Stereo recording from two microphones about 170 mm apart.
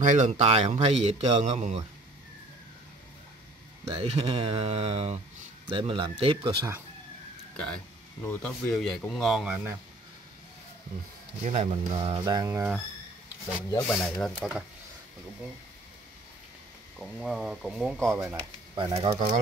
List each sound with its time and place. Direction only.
0.0 s speech: 45° right (ahead or behind)
3.9 s speech: 35° right (ahead or behind)
7.5 s speech: 5° left (ahead or behind)
11.4 s speech: 35° right (ahead or behind); by 12.7 s 15° right (ahead or behind)
13.7 s speech: 5° left (ahead or behind)
17.0 s speech: centre (ahead or behind)
18.0 s speech: 15° right (ahead or behind)
18.3 s speech: 35° right (ahead or behind)